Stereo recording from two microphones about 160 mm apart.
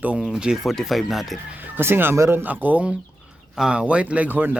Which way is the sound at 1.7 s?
15° right (ahead or behind).